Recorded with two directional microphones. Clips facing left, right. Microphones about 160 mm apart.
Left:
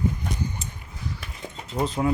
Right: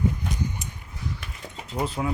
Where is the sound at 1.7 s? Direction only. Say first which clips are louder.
Left 2 dB; 5° right (ahead or behind).